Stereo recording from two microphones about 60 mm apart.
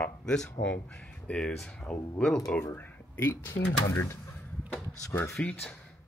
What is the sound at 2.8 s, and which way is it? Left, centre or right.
Speech, left.